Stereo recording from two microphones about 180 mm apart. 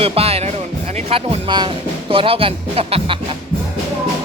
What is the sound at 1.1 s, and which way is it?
Speech, 30° right (ahead or behind).